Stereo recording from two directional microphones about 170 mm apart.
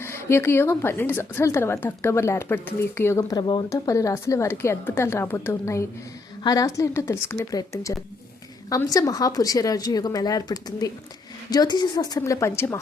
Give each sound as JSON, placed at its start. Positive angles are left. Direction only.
{"t": 0.0, "sound": "a woman's voice", "side_deg": 15}